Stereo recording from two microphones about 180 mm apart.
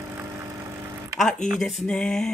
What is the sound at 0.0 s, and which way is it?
Vehicle, 15° right (ahead or behind).